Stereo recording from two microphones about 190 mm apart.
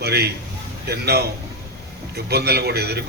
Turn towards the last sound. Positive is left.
turn(degrees=-55)  # may be behind; listen again after turning